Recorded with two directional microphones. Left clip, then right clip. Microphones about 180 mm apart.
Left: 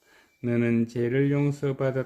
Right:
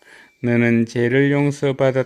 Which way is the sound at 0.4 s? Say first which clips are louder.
Right 8 dB; 30° right (ahead or behind).